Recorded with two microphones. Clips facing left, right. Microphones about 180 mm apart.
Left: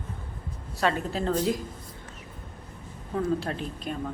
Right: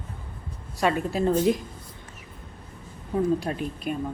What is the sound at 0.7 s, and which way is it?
Speech, 10° right (ahead or behind).